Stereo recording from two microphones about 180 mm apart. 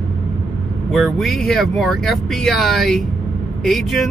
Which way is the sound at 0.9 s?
Centre (ahead or behind).